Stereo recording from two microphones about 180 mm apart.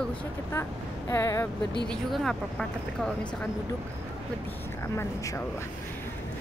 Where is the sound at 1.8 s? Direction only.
5° left (ahead or behind).